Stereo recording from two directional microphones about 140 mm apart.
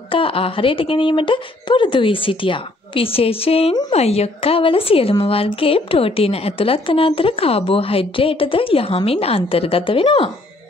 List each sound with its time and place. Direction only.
0.1 s a woman's voice: 40° left (ahead or behind)